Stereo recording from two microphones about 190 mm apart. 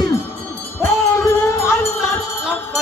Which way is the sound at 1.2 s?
15° left (ahead or behind).